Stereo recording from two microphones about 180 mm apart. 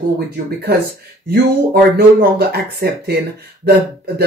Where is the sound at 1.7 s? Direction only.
60° right (ahead or behind).